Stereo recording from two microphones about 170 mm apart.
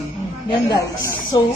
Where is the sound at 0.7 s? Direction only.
20° left (ahead or behind).